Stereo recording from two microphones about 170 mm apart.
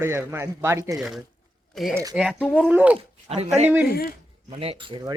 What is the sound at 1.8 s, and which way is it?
Speech, centre (ahead or behind).